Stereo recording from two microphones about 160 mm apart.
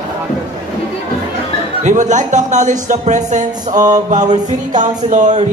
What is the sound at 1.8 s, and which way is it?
Music, 50° right (ahead or behind).